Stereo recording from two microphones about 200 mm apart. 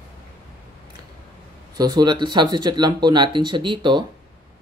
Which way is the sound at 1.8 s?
20° right (ahead or behind).